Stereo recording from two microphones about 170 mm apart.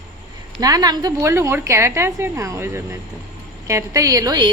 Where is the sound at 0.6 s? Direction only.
20° right (ahead or behind).